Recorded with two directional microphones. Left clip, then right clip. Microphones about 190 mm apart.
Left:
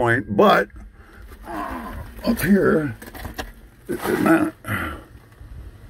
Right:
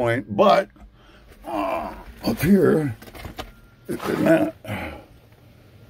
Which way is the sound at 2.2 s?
55° right (ahead or behind).